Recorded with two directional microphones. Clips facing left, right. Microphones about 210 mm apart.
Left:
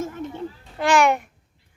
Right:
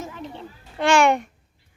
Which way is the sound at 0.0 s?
50° left (ahead or behind).